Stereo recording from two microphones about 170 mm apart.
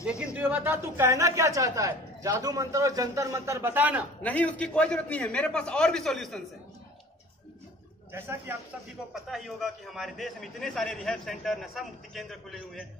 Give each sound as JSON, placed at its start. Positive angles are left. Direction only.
{"t": 0.0, "sound": "speech", "side_deg": -5}
{"t": 4.2, "sound": "a man's voice", "side_deg": 10}
{"t": 8.1, "sound": "speech", "side_deg": -15}
{"t": 9.1, "sound": "a man's voice", "side_deg": 0}